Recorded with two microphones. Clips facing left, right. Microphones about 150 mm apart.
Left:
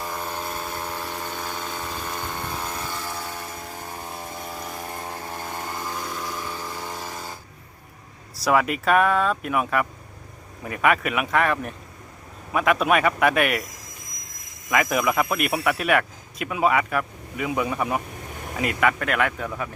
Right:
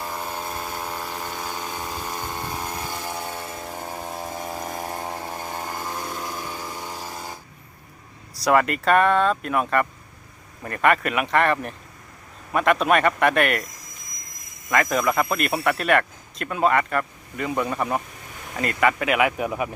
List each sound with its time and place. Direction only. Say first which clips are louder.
0.0 s vehicle: even; 5° right (ahead or behind); by 3.4 s 20° right (ahead or behind)
4.5 s chainsaw: right 3 dB; 45° right (ahead or behind)
5.8 s vehicle: even; 20° right (ahead or behind)
8.4 s speech: right 1 dB; centre (ahead or behind)
14.7 s speech: right 1 dB; 5° left (ahead or behind); by 19.7 s 15° right (ahead or behind)